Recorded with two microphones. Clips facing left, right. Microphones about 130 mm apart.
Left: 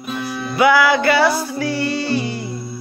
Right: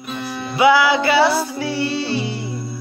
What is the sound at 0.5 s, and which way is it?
Music, 25° right (ahead or behind).